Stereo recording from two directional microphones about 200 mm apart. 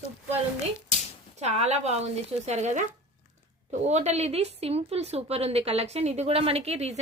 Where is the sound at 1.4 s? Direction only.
35° right (ahead or behind).